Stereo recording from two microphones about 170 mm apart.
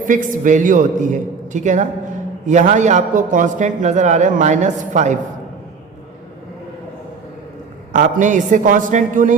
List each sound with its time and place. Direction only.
0.0 s a man's voice: 50° right (ahead or behind)
7.9 s a man's voice: 50° right (ahead or behind)